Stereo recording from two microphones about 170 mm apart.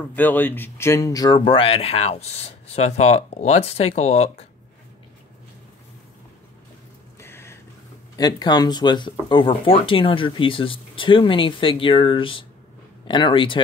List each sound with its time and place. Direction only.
0.0 s speech: 10° left (ahead or behind); by 4.5 s 40° left (ahead or behind)
7.2 s a sound: 15° left (ahead or behind)
8.2 s speech: 25° left (ahead or behind)